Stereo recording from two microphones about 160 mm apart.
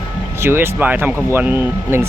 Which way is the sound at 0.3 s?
15° right (ahead or behind).